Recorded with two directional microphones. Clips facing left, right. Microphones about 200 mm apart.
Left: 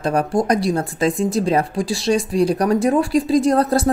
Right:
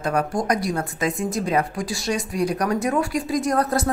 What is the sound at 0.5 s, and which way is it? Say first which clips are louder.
Speech: left 5 dB; 30° left (ahead or behind).